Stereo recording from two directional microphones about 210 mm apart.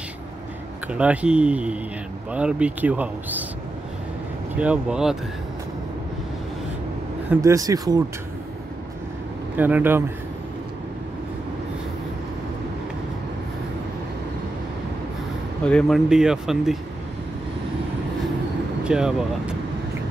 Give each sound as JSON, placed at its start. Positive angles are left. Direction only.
{"t": 0.9, "sound": "speech", "side_deg": -5}
{"t": 4.6, "sound": "speech", "side_deg": -5}
{"t": 7.2, "sound": "speech", "side_deg": -15}
{"t": 9.6, "sound": "speech", "side_deg": -10}
{"t": 15.6, "sound": "speech", "side_deg": 0}
{"t": 18.9, "sound": "speech", "side_deg": -5}